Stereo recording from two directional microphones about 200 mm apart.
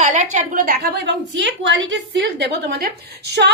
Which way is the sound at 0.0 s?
35° right (ahead or behind).